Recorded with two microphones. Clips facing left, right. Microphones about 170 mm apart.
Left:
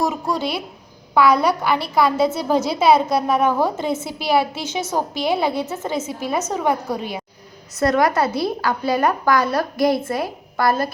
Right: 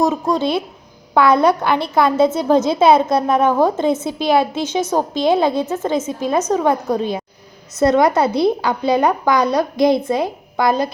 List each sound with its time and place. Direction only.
0.0 s a woman's voice: 20° right (ahead or behind)